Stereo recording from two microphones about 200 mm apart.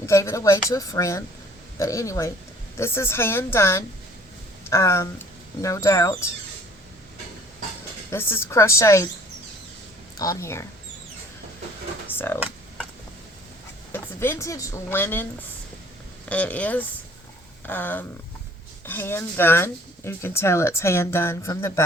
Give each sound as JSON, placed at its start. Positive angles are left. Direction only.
{"t": 0.0, "sound": "speech", "side_deg": 15}
{"t": 8.1, "sound": "speech", "side_deg": 10}
{"t": 10.2, "sound": "speech", "side_deg": 15}
{"t": 12.0, "sound": "a sound", "side_deg": 10}
{"t": 13.9, "sound": "a woman's voice", "side_deg": 10}
{"t": 16.3, "sound": "speech", "side_deg": 5}